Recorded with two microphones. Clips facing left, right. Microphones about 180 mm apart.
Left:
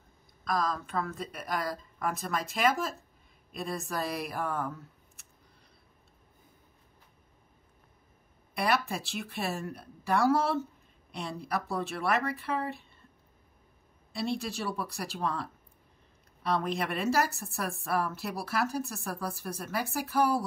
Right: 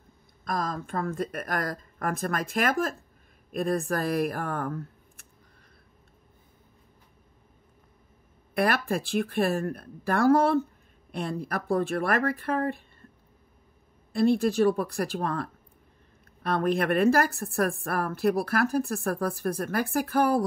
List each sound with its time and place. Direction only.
0.5 s speech: 50° right (ahead or behind)
8.5 s speech: 55° right (ahead or behind)
14.1 s a woman's voice: 55° right (ahead or behind)